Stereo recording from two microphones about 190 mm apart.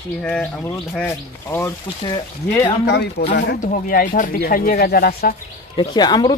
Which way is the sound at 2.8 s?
60° left (ahead or behind).